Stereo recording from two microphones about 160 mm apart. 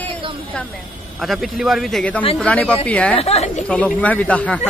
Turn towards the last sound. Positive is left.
turn(degrees=10)  # may be behind; listen again after turning